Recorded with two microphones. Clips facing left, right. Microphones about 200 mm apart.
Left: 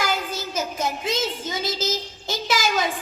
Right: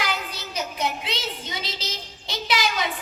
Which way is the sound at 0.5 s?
45° left (ahead or behind).